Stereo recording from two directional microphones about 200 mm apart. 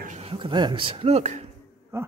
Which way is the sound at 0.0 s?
35° right (ahead or behind).